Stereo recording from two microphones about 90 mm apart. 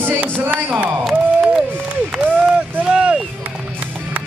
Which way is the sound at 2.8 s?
10° right (ahead or behind).